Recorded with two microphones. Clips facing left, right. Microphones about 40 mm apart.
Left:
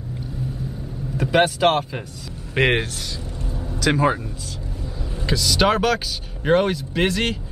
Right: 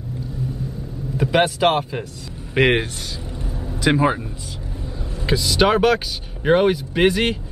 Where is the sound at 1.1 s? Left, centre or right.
Centre.